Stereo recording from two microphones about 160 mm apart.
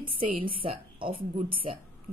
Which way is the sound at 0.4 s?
35° right (ahead or behind).